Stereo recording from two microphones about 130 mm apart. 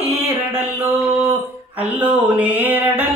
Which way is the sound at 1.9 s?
10° right (ahead or behind).